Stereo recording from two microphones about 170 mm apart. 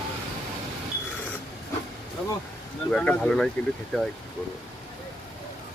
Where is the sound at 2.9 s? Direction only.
5° left (ahead or behind).